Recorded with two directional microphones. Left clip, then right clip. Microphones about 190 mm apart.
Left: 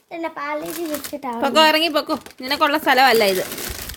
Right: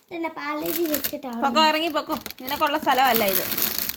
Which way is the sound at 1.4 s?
45° left (ahead or behind).